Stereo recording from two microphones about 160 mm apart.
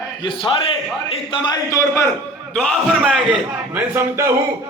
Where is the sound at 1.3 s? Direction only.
20° left (ahead or behind).